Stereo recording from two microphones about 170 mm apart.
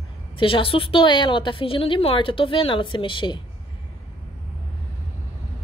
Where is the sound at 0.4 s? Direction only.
30° left (ahead or behind).